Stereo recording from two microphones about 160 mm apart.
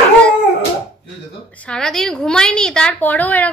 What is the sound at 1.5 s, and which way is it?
A woman's voice, 5° left (ahead or behind).